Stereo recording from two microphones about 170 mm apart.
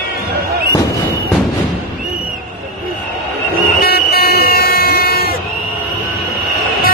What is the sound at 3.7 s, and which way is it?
Vehicle, 65° left (ahead or behind).